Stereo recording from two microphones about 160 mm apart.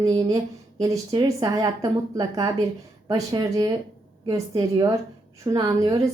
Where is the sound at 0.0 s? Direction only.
30° right (ahead or behind).